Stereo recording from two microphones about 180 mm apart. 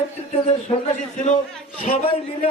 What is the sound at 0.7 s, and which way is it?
Speech, 35° left (ahead or behind).